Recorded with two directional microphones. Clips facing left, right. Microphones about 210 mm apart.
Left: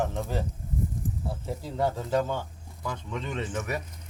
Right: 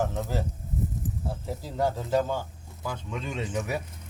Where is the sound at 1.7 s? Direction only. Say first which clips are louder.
Right 1 dB; 5° right (ahead or behind).